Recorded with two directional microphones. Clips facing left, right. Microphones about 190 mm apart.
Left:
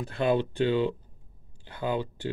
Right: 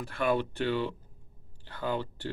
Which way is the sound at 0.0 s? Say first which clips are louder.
Left 3 dB; 20° left (ahead or behind).